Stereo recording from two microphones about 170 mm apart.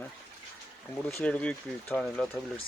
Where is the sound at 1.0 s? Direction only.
5° left (ahead or behind).